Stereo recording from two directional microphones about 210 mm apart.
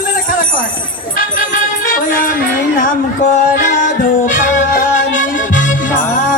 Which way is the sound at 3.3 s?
35° left (ahead or behind).